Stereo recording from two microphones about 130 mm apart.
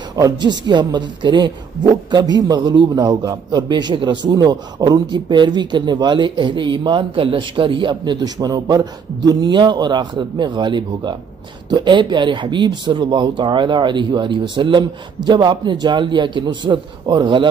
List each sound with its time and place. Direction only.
0.1 s a woman's voice: 30° right (ahead or behind)